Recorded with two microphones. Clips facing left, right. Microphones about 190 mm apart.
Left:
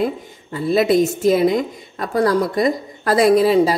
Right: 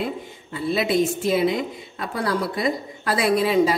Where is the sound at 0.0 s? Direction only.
40° left (ahead or behind).